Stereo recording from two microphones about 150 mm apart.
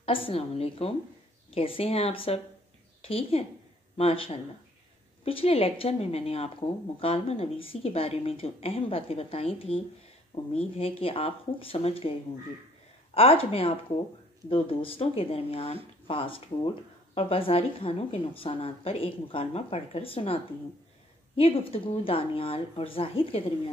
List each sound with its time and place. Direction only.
0.0 s speech: 40° left (ahead or behind)
21.4 s speech: 40° left (ahead or behind)